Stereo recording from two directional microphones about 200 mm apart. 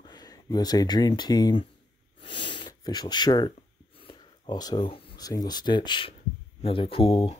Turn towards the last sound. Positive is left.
turn(degrees=25)  # may be behind; listen again after turning